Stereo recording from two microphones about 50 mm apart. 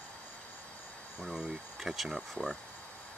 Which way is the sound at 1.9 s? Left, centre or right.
Centre.